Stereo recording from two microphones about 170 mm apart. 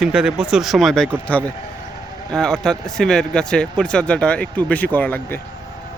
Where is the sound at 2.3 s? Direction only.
5° left (ahead or behind).